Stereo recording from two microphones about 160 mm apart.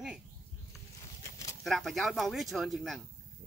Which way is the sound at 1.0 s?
20° left (ahead or behind).